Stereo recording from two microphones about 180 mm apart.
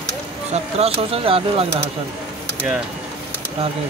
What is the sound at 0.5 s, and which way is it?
Speech, 35° right (ahead or behind).